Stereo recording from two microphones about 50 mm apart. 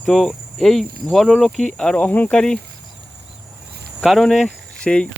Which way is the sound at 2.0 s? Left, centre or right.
Left.